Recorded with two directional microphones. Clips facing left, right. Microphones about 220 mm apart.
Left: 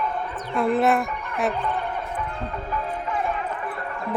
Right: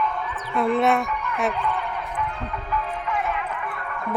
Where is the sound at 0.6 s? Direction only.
Centre (ahead or behind).